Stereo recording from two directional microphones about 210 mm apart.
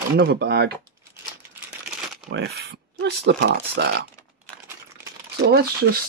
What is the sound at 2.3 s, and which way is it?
Speech, 55° right (ahead or behind).